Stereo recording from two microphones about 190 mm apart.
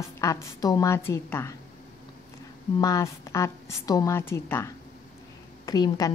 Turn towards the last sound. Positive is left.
turn(degrees=20)  # may be behind; listen again after turning